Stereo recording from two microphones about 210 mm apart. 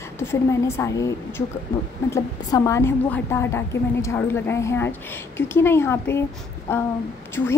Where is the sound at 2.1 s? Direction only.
15° left (ahead or behind).